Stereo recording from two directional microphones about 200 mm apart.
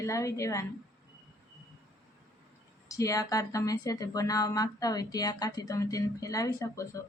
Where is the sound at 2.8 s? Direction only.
15° left (ahead or behind).